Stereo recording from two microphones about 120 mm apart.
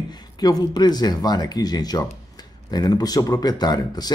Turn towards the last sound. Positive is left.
turn(degrees=35)  # may be behind; listen again after turning